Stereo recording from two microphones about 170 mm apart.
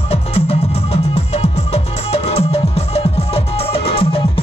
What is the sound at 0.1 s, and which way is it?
Music, 35° left (ahead or behind).